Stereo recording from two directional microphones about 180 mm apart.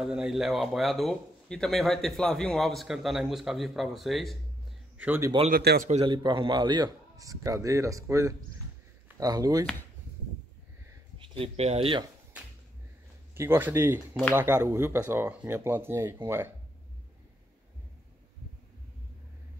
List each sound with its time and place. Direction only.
0.0 s a man's voice: 5° right (ahead or behind)
4.9 s a man's voice: 10° right (ahead or behind)
5.5 s a man's voice: 60° right (ahead or behind)
6.0 s a man's voice: 25° right (ahead or behind)
11.1 s speech: 30° right (ahead or behind)
13.3 s speech: 15° right (ahead or behind)